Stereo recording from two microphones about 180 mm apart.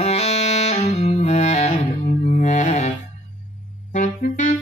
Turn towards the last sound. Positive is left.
turn(degrees=45)  # may be behind; listen again after turning